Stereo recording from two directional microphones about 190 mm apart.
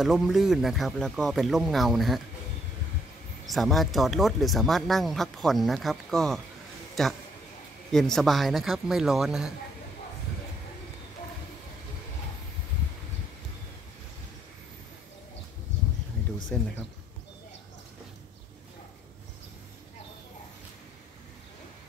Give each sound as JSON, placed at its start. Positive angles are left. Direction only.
{"t": 0.0, "sound": "speech", "side_deg": 0}
{"t": 3.4, "sound": "speech", "side_deg": 0}
{"t": 15.7, "sound": "a sound", "side_deg": 70}
{"t": 16.5, "sound": "speech", "side_deg": 5}